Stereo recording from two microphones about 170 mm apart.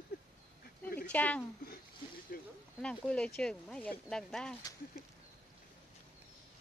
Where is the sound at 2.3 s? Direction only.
60° left (ahead or behind).